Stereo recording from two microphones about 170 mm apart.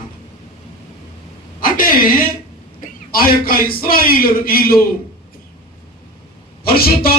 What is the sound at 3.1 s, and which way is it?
Speech, 60° left (ahead or behind).